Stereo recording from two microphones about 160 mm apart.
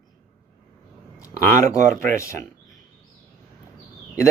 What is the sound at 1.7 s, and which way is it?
Speech, 55° right (ahead or behind).